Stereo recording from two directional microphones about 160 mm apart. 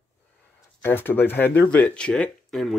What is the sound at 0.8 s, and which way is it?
Speech, 15° left (ahead or behind).